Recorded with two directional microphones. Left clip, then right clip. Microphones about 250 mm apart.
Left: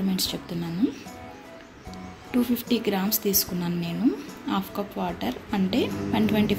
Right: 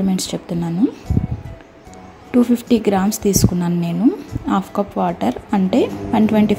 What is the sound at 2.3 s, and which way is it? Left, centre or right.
A woman's voice, right.